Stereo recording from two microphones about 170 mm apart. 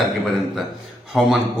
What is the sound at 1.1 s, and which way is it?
Speech, 5° right (ahead or behind).